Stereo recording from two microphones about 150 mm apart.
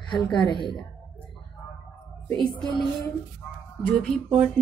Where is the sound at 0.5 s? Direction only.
30° left (ahead or behind).